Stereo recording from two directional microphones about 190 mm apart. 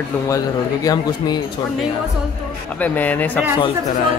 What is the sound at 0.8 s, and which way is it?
Speech, 25° left (ahead or behind).